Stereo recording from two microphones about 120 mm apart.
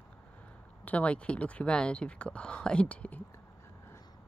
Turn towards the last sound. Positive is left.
turn(degrees=10)  # may be behind; listen again after turning